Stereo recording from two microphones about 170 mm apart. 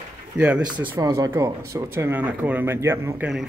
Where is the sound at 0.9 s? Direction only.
20° right (ahead or behind).